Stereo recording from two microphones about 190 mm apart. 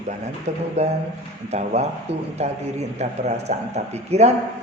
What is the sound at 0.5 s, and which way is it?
A man's voice, 35° right (ahead or behind).